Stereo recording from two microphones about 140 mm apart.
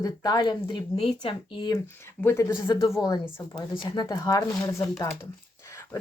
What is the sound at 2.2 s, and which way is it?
Speech, 20° left (ahead or behind).